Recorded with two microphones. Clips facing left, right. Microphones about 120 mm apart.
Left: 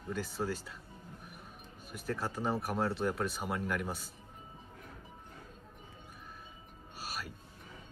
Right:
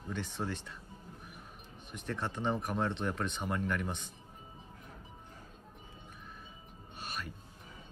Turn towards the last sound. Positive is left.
turn(degrees=5)  # may be behind; listen again after turning